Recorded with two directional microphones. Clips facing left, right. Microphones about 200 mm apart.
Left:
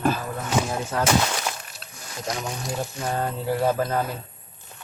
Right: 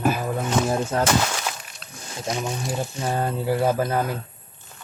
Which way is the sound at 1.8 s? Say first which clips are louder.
Right 3 dB; centre (ahead or behind).